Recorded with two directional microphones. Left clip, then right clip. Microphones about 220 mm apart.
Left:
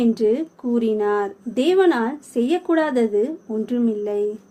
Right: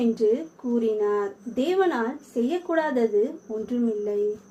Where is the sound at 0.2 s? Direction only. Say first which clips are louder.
Left 3 dB; 50° left (ahead or behind).